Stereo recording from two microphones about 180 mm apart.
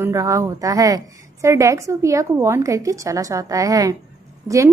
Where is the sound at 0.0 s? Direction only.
15° right (ahead or behind).